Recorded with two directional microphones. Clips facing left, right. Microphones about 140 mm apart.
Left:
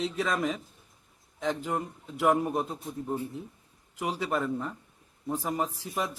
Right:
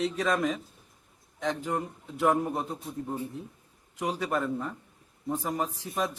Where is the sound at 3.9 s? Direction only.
5° left (ahead or behind).